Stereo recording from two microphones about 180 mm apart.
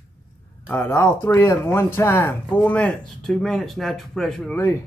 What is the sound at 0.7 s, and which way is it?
Speech, 10° left (ahead or behind).